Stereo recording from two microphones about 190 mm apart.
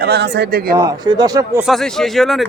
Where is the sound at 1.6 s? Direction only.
Centre (ahead or behind).